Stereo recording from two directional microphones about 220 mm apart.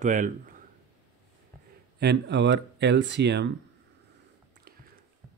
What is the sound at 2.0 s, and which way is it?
Speech, 50° right (ahead or behind).